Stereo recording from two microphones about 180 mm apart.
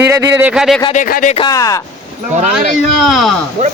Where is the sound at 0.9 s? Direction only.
50° left (ahead or behind).